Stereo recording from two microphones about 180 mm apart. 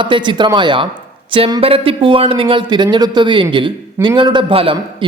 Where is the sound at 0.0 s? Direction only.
25° right (ahead or behind).